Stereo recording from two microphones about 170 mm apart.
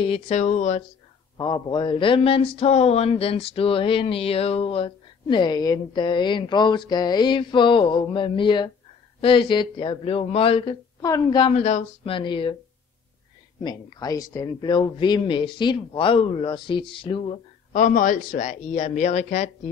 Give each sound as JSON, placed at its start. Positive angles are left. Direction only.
{"t": 0.1, "sound": "speech", "side_deg": 40}
{"t": 1.4, "sound": "speech", "side_deg": 25}
{"t": 13.6, "sound": "speech", "side_deg": 25}
{"t": 17.7, "sound": "speech", "side_deg": 50}